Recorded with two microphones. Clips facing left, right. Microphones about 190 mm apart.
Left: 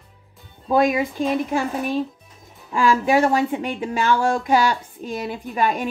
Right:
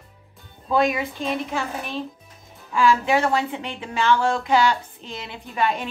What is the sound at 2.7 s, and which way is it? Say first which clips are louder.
A woman's voice: left 2 dB; 50° left (ahead or behind).